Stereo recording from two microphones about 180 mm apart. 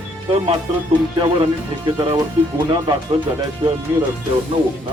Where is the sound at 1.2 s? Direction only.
30° right (ahead or behind).